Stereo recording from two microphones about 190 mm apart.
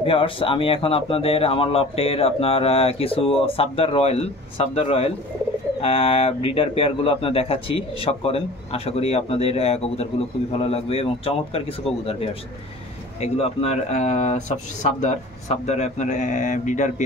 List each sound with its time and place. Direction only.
0.0 s speech: 30° left (ahead or behind)